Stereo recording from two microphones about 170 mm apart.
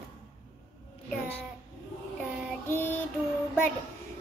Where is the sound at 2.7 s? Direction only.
10° left (ahead or behind).